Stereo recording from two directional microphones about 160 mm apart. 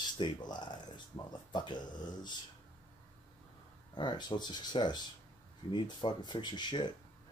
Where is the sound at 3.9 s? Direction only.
30° left (ahead or behind).